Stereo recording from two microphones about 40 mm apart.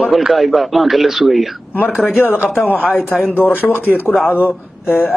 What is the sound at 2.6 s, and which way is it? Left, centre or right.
Speech, left.